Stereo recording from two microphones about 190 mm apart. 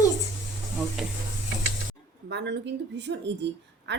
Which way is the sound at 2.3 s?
65° right (ahead or behind).